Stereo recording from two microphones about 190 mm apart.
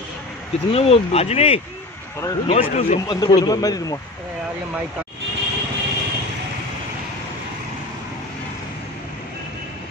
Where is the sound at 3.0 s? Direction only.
20° left (ahead or behind).